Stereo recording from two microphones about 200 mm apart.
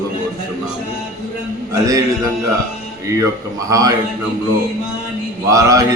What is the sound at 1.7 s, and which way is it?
Mantra, 20° right (ahead or behind).